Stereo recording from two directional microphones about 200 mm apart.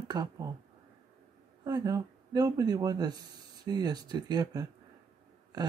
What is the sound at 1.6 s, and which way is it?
Speech, 20° right (ahead or behind).